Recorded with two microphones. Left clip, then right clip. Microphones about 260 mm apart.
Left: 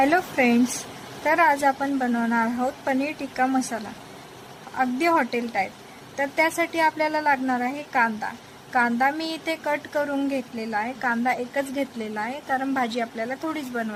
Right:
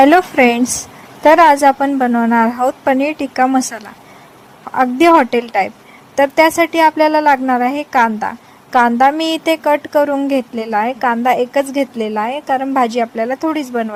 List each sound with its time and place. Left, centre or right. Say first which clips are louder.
0.0 s a woman's voice: right 11 dB; right